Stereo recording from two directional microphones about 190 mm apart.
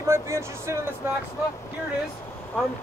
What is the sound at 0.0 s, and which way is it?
Speech, 15° right (ahead or behind).